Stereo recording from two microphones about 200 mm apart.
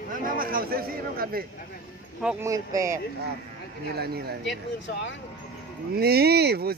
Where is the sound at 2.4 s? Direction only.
15° right (ahead or behind).